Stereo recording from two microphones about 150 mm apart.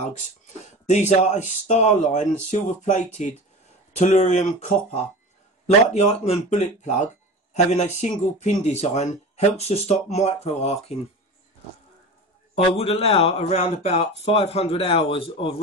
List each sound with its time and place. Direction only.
0.8 s speech: 50° left (ahead or behind)
12.5 s speech: 45° left (ahead or behind)